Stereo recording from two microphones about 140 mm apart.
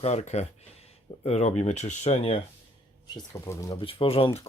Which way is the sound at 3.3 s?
20° left (ahead or behind).